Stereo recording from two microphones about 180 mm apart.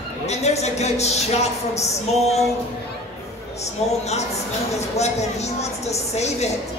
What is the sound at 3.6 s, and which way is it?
Speech, 35° left (ahead or behind).